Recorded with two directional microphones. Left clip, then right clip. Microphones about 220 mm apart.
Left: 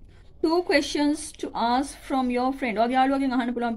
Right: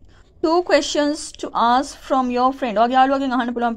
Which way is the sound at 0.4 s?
15° right (ahead or behind).